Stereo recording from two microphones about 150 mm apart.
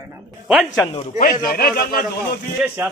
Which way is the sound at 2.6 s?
10° right (ahead or behind).